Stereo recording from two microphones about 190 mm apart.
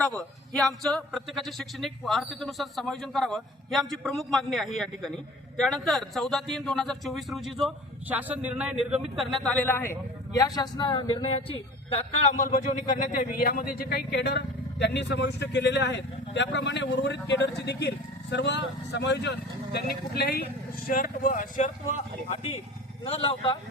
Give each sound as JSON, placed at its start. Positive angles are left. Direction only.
{"t": 0.0, "sound": "a man's voice", "side_deg": 5}
{"t": 20.8, "sound": "speech", "side_deg": 45}
{"t": 23.0, "sound": "speech", "side_deg": 30}